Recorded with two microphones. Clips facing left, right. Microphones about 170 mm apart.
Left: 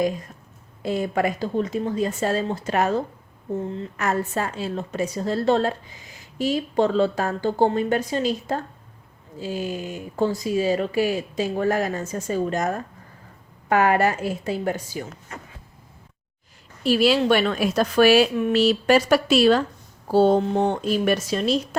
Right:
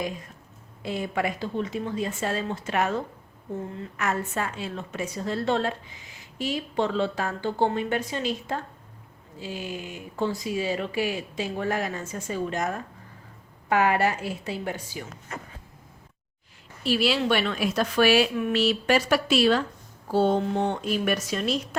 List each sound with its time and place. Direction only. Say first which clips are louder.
0.8 s speech: left 5 dB; 40° left (ahead or behind)
16.8 s speech: left 5 dB; 45° left (ahead or behind)